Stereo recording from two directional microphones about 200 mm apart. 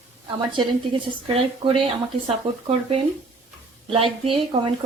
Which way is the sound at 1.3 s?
25° right (ahead or behind).